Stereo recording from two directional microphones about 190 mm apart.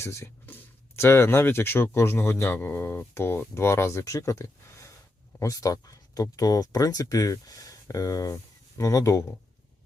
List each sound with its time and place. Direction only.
0.0 s speech: 15° left (ahead or behind)